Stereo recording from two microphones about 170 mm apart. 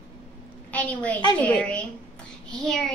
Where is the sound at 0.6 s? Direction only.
10° left (ahead or behind).